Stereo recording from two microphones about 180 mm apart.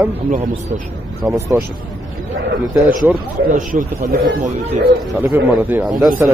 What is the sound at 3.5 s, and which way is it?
Speech, 45° right (ahead or behind).